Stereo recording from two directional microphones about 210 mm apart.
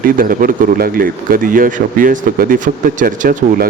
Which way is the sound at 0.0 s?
40° right (ahead or behind).